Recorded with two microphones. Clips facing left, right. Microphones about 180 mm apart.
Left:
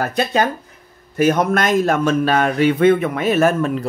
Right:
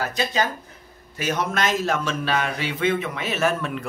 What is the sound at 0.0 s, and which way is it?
A man's voice, 55° left (ahead or behind).